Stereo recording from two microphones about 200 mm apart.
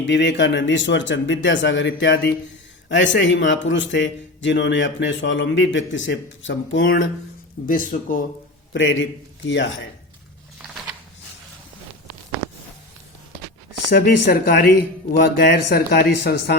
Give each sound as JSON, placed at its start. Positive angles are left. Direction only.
{"t": 0.0, "sound": "a man's voice", "side_deg": 60}
{"t": 7.7, "sound": "speech", "side_deg": 40}
{"t": 8.7, "sound": "a man's voice", "side_deg": 70}
{"t": 13.9, "sound": "a man's voice", "side_deg": 50}